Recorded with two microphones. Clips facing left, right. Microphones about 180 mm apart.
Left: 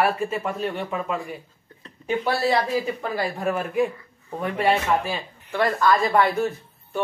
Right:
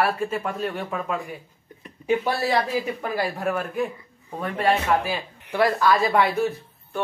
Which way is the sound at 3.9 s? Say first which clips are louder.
Left 2 dB; 15° right (ahead or behind).